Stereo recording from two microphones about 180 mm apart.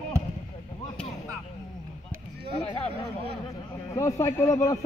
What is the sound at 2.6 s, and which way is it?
Speech, 35° left (ahead or behind).